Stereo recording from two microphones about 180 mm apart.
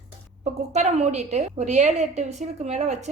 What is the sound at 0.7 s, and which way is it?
A woman's voice, 40° right (ahead or behind).